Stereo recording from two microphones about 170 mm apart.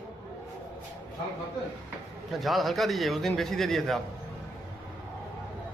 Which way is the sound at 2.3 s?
Centre (ahead or behind).